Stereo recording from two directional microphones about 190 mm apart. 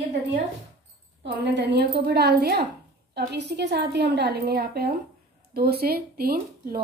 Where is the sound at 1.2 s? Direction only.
60° right (ahead or behind).